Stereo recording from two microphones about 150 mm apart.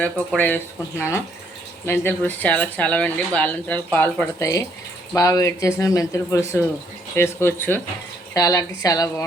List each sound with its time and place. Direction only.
0.0 s speech: 10° left (ahead or behind)